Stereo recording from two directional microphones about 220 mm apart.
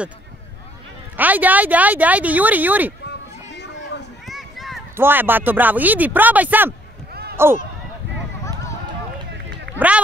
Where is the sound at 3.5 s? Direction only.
50° left (ahead or behind).